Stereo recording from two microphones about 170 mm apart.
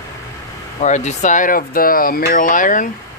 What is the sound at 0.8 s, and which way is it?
Speech, 45° left (ahead or behind).